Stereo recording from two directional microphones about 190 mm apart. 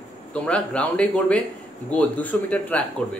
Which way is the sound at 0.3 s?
5° left (ahead or behind).